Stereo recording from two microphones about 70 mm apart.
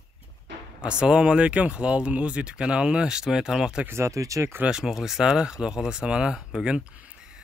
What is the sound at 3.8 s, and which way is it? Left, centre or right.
Speech, right.